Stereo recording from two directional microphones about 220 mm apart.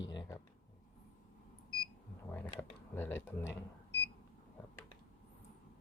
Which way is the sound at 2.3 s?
10° left (ahead or behind).